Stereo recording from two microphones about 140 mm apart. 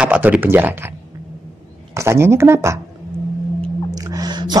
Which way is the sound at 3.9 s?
25° right (ahead or behind).